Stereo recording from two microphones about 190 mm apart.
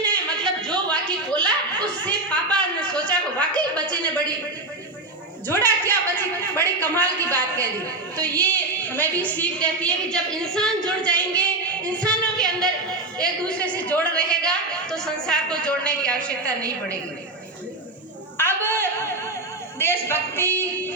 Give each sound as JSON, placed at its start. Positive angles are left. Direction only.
{"t": 0.0, "sound": "chuckle", "side_deg": 5}
{"t": 5.5, "sound": "a woman's voice", "side_deg": 10}
{"t": 18.3, "sound": "a sound", "side_deg": 10}
{"t": 19.8, "sound": "a woman's voice", "side_deg": 10}